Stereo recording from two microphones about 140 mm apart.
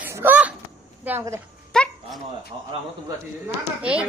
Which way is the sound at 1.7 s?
5° left (ahead or behind).